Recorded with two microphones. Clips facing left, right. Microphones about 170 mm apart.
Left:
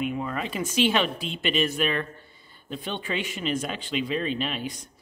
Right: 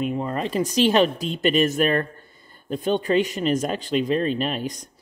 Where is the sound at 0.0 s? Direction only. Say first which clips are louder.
Right 4 dB; 35° right (ahead or behind).